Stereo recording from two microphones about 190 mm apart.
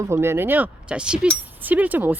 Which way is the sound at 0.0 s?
15° right (ahead or behind).